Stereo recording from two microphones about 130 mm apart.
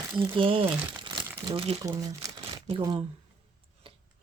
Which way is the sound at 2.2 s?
25° right (ahead or behind).